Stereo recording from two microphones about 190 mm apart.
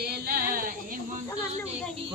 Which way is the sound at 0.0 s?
55° right (ahead or behind).